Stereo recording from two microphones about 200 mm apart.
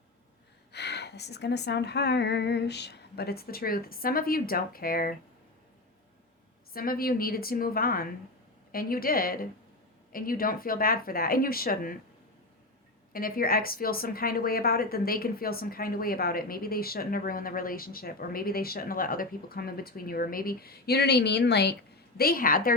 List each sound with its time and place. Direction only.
0.7 s speech: 55° left (ahead or behind)
6.7 s speech: 50° left (ahead or behind)
13.1 s speech: 45° left (ahead or behind)